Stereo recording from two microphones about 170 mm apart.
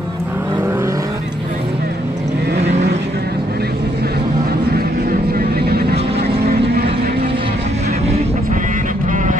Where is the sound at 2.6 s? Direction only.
40° right (ahead or behind).